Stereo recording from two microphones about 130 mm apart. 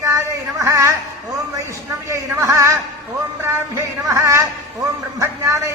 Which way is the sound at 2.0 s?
25° right (ahead or behind).